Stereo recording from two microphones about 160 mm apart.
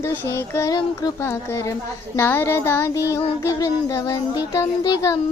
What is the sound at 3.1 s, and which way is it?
Child singing, 20° left (ahead or behind).